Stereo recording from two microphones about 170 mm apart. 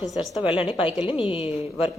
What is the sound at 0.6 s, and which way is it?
Speech, 30° left (ahead or behind).